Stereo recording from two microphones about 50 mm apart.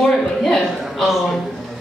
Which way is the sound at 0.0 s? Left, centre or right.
Centre.